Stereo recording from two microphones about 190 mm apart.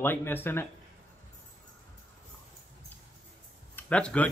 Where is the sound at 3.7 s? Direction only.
10° left (ahead or behind).